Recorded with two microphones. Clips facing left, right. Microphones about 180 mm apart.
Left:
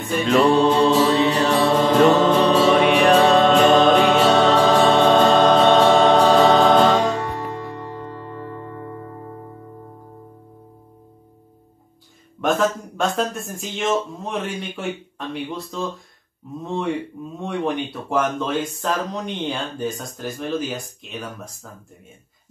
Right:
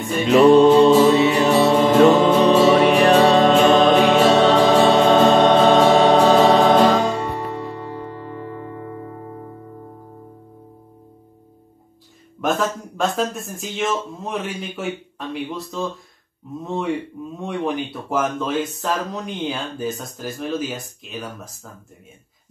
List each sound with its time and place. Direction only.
0.0 s music: centre (ahead or behind)
0.7 s mantra: 15° right (ahead or behind)
2.0 s music: centre (ahead or behind)
12.4 s speech: centre (ahead or behind)